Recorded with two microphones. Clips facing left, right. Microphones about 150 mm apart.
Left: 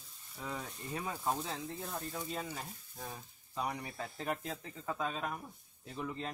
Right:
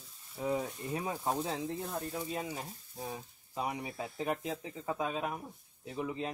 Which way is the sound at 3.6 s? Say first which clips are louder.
Right 2 dB; 10° right (ahead or behind).